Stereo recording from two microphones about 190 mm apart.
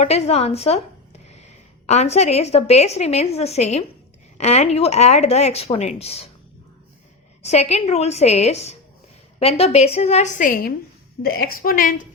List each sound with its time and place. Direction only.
0.0 s speech: 35° left (ahead or behind)
1.9 s speech: 35° left (ahead or behind)
7.4 s a woman's voice: 35° left (ahead or behind)